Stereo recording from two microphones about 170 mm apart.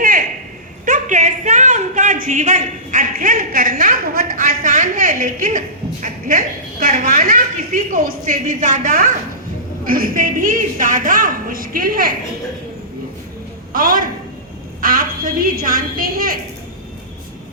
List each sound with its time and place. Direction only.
0.9 s a woman's voice: 45° right (ahead or behind)
13.7 s a sound: 55° right (ahead or behind)
14.8 s a woman's voice: 55° right (ahead or behind)